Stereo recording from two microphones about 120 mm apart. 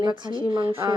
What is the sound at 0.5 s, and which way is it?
Speech, 50° right (ahead or behind).